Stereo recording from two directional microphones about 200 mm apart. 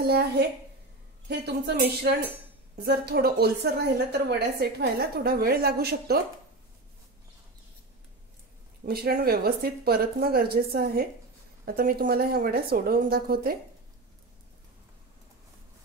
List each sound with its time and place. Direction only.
0.0 s a woman's voice: 55° right (ahead or behind)
8.8 s speech: 50° right (ahead or behind)